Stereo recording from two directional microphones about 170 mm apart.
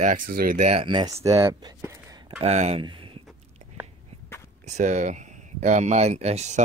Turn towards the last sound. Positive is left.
turn(degrees=-40)  # may be behind; listen again after turning